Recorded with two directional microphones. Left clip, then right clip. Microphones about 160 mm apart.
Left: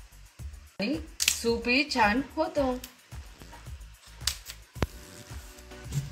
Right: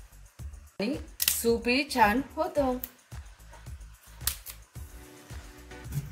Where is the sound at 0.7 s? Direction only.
15° right (ahead or behind).